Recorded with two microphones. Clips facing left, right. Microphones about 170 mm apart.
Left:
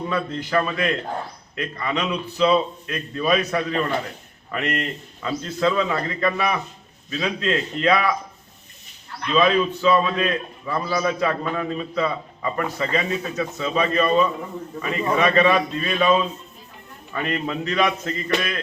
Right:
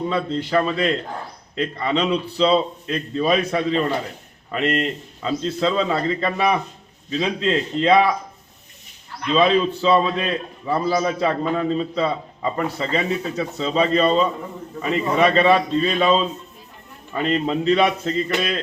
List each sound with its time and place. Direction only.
0.1 s a man's voice: 30° right (ahead or behind)
9.3 s a man's voice: 30° right (ahead or behind)